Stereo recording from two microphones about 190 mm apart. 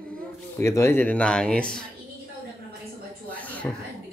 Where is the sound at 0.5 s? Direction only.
15° left (ahead or behind).